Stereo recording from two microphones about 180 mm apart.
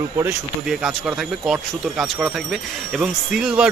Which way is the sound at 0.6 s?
Centre (ahead or behind).